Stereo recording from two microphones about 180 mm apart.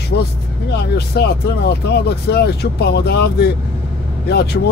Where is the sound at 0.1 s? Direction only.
65° left (ahead or behind).